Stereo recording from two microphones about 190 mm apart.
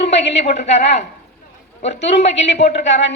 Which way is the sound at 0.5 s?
35° left (ahead or behind).